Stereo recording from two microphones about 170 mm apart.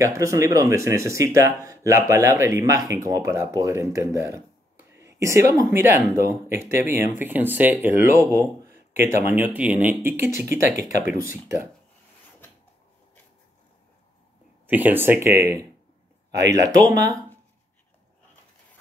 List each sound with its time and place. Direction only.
0.0 s speech: 20° right (ahead or behind)
4.9 s a sound: 15° right (ahead or behind)
5.5 s speech: 15° right (ahead or behind)
10.6 s speech: 50° left (ahead or behind)
14.7 s speech: 10° right (ahead or behind)